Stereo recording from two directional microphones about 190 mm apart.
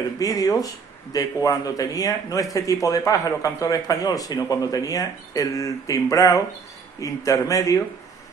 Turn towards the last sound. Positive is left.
turn(degrees=15)  # may be behind; listen again after turning